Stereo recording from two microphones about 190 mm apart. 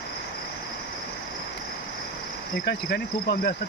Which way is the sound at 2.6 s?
55° left (ahead or behind).